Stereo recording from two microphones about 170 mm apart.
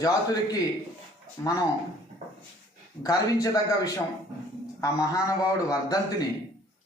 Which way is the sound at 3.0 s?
20° left (ahead or behind).